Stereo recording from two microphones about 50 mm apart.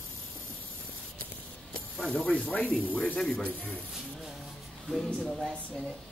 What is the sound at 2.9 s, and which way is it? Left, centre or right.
Speech, left.